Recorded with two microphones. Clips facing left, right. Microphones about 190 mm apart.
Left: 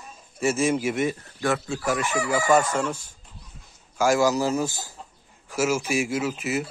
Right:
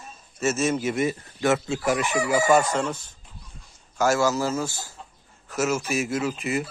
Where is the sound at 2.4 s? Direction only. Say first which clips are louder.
Left 1 dB; 5° left (ahead or behind).